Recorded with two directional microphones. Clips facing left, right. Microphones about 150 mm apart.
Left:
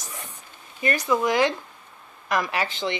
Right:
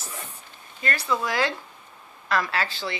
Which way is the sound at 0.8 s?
15° left (ahead or behind).